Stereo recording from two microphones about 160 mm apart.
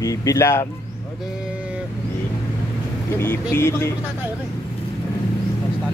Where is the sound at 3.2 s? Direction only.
15° left (ahead or behind).